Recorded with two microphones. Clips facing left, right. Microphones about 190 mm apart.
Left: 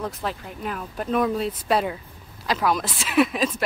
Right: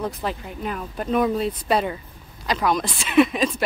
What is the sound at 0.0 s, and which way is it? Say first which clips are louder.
Speech: right 2 dB; centre (ahead or behind).